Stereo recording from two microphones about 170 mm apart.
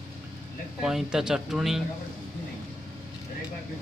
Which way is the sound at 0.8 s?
5° right (ahead or behind).